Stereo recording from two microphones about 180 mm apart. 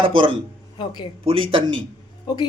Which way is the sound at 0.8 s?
25° left (ahead or behind).